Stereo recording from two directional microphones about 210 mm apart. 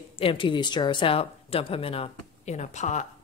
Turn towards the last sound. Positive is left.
turn(degrees=35)  # may be behind; listen again after turning